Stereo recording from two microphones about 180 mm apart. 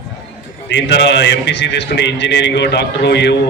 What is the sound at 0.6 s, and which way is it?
A man's voice, 75° left (ahead or behind).